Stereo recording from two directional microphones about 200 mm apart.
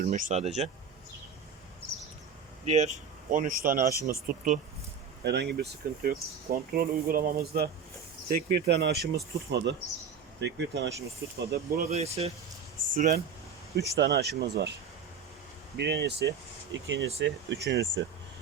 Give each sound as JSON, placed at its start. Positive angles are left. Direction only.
{"t": 0.0, "sound": "speech", "side_deg": -40}
{"t": 2.6, "sound": "speech", "side_deg": -35}
{"t": 5.2, "sound": "speech", "side_deg": -60}
{"t": 11.9, "sound": "speech", "side_deg": -30}
{"t": 12.9, "sound": "speech", "side_deg": -45}
{"t": 13.7, "sound": "speech", "side_deg": -55}
{"t": 15.8, "sound": "speech", "side_deg": -55}
{"t": 16.7, "sound": "speech", "side_deg": -65}